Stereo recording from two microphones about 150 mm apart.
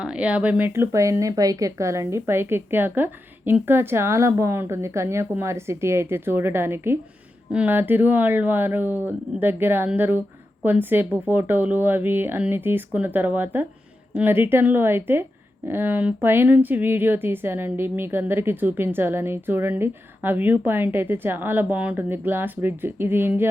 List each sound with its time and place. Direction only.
0.0 s a woman's voice: 5° right (ahead or behind)